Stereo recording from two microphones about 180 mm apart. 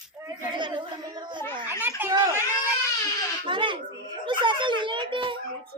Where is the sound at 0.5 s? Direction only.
25° right (ahead or behind).